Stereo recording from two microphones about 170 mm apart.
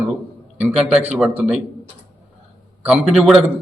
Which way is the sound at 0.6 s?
5° right (ahead or behind).